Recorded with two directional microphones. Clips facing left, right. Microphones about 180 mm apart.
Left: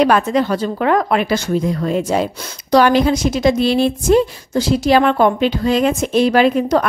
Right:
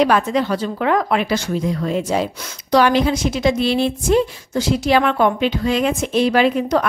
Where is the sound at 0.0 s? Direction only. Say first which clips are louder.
Left 2 dB; 45° left (ahead or behind).